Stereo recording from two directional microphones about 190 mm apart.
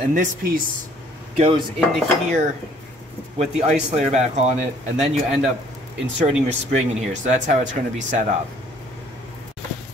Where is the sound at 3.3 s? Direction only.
35° right (ahead or behind).